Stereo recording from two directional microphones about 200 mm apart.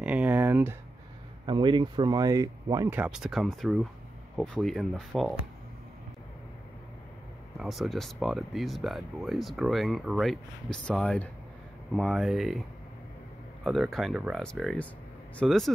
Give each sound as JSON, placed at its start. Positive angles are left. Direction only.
{"t": 0.0, "sound": "a sound", "side_deg": -5}
{"t": 1.4, "sound": "speech", "side_deg": -25}
{"t": 3.0, "sound": "speech", "side_deg": -5}
{"t": 7.5, "sound": "speech", "side_deg": 0}
{"t": 13.7, "sound": "speech", "side_deg": 0}